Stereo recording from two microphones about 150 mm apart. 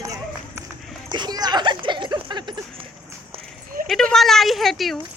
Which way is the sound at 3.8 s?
5° left (ahead or behind).